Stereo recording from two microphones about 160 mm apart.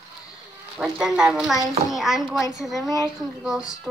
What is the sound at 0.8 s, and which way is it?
A woman's voice, 5° right (ahead or behind).